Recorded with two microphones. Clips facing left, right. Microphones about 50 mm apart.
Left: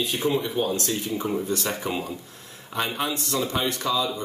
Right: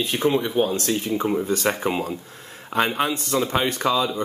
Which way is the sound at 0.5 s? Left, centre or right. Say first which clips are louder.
Right 4 dB; right.